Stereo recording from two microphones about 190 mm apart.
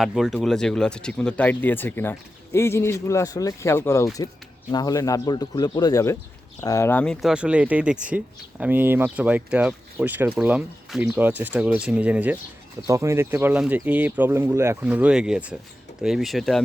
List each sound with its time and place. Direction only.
0.0 s a man's voice: centre (ahead or behind)